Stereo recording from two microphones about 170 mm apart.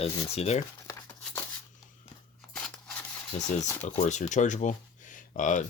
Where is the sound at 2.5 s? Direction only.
5° left (ahead or behind).